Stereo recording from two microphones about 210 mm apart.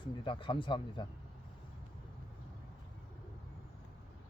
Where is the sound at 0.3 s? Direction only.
25° left (ahead or behind).